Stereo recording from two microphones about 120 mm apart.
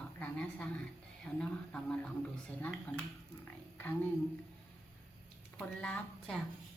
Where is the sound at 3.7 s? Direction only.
15° left (ahead or behind).